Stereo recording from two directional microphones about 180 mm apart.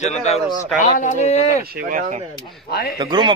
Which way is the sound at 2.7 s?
60° left (ahead or behind).